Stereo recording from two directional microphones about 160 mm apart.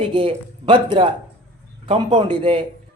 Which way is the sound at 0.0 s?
35° right (ahead or behind).